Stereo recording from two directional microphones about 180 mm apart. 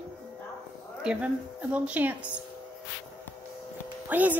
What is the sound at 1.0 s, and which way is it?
A woman's voice, 5° right (ahead or behind).